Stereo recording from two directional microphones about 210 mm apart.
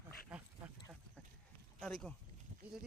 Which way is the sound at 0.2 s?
5° right (ahead or behind).